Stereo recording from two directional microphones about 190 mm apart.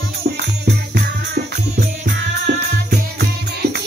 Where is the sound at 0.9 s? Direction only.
55° right (ahead or behind).